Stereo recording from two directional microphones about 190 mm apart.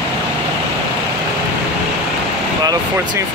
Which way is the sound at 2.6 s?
20° right (ahead or behind).